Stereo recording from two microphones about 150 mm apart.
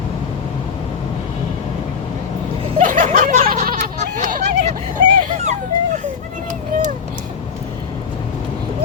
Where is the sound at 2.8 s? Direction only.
60° right (ahead or behind).